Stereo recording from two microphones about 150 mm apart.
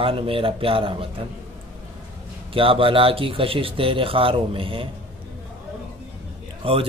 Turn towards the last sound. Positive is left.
turn(degrees=-35)  # may be behind; listen again after turning